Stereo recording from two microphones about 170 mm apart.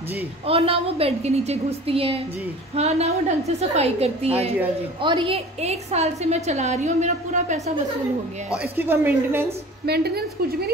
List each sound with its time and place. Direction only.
0.5 s a woman's voice: 35° right (ahead or behind)
8.5 s a woman's voice: 10° right (ahead or behind)
9.8 s a woman's voice: 70° right (ahead or behind)